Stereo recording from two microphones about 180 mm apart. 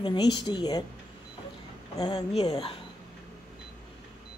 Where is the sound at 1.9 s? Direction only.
20° left (ahead or behind).